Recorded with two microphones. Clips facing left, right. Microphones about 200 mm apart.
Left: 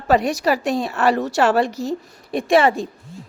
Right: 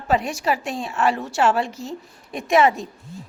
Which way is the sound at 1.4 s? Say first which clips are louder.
Left 1 dB; 55° left (ahead or behind).